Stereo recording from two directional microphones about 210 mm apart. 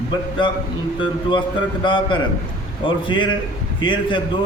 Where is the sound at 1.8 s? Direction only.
25° left (ahead or behind).